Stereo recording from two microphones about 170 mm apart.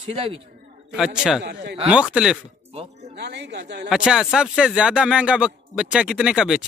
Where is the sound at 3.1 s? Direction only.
90° right.